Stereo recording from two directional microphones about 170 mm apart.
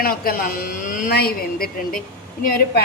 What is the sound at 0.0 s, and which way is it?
A woman's voice, 60° left (ahead or behind).